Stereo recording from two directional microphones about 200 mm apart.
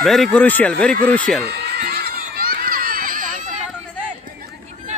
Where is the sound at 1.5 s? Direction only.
55° right (ahead or behind).